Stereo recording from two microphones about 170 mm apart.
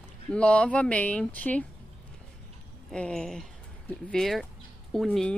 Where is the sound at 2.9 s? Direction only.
5° left (ahead or behind).